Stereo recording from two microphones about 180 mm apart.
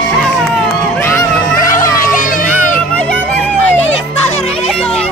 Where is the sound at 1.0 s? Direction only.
15° left (ahead or behind).